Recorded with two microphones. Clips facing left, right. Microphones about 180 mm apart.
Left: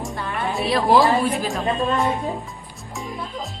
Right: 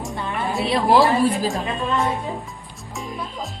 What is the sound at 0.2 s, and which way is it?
Music, 20° right (ahead or behind).